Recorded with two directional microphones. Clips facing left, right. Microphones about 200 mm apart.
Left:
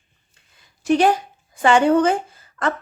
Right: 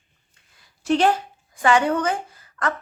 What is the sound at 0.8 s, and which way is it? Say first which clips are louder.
Speech: left 2 dB; 15° left (ahead or behind).